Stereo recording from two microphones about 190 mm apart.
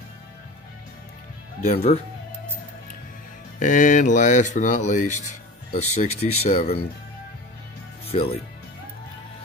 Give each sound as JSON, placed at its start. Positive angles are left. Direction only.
{"t": 1.6, "sound": "speech", "side_deg": 35}
{"t": 3.5, "sound": "speech", "side_deg": 45}
{"t": 8.1, "sound": "speech", "side_deg": 30}